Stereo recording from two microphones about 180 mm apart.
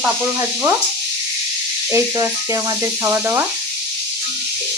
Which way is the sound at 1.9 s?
15° right (ahead or behind).